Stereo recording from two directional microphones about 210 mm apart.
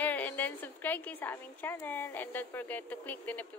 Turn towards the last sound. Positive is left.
turn(degrees=10)  # may be behind; listen again after turning